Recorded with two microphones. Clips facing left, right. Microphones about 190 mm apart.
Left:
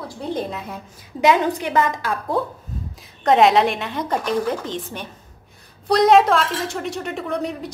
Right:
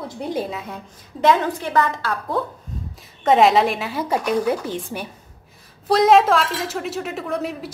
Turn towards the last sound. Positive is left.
turn(degrees=-5)  # may be behind; listen again after turning